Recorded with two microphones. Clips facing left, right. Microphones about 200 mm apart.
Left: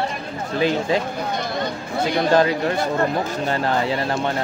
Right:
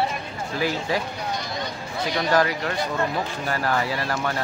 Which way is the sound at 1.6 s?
55° left (ahead or behind).